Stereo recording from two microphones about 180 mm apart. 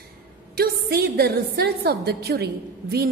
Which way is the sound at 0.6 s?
60° right (ahead or behind).